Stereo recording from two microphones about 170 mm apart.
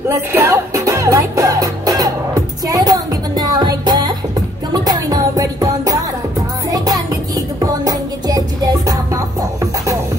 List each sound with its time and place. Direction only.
0.3 s music: 15° right (ahead or behind)